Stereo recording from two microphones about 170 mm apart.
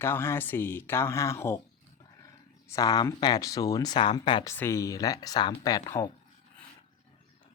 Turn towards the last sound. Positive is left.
turn(degrees=20)  # may be behind; listen again after turning